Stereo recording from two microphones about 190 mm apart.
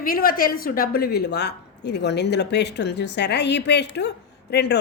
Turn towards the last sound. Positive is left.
turn(degrees=60)  # may be behind; listen again after turning